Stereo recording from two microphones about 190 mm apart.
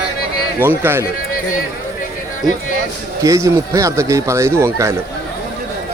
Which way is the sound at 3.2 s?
15° right (ahead or behind).